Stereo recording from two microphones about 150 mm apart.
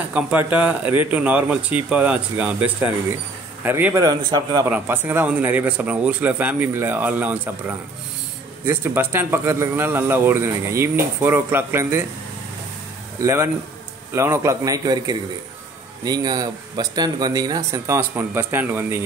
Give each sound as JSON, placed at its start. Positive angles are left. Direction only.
{"t": 0.0, "sound": "speech", "side_deg": -10}
{"t": 4.6, "sound": "speech", "side_deg": -15}
{"t": 13.2, "sound": "speech", "side_deg": -20}